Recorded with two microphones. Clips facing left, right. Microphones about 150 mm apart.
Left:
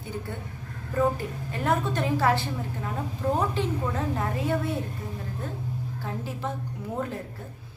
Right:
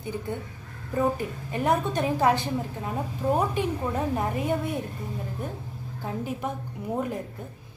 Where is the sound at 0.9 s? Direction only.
15° right (ahead or behind).